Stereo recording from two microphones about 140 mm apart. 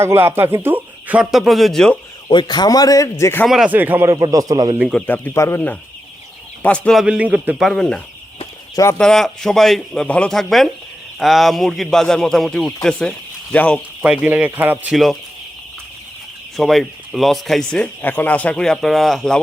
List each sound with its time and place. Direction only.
0.0 s speech: 20° right (ahead or behind); by 2.0 s 5° left (ahead or behind)
2.2 s a man's voice: 30° left (ahead or behind)
3.4 s speech: centre (ahead or behind)
3.7 s speech: 15° right (ahead or behind)
4.1 s a man's voice: 25° right (ahead or behind)
4.8 s speech: centre (ahead or behind)
5.0 s speech: 15° left (ahead or behind)
6.6 s speech: 10° left (ahead or behind)
7.0 s speech: 10° right (ahead or behind)
7.7 s speech: 5° left (ahead or behind)
8.7 s speech: 20° left (ahead or behind)
9.0 s speech: 5° left (ahead or behind)
14.0 s speech: 10° right (ahead or behind)
16.6 s speech: centre (ahead or behind)